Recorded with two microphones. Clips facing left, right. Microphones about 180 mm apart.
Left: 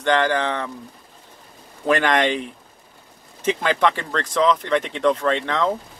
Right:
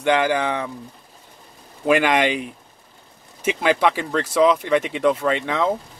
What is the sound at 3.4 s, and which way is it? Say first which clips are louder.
Speech: right 1 dB; 10° right (ahead or behind).